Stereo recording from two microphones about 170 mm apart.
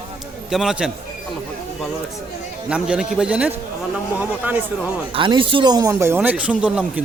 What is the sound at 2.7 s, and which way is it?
A man's voice, 5° right (ahead or behind).